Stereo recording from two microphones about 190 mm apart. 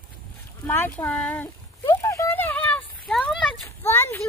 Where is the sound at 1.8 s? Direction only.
15° left (ahead or behind).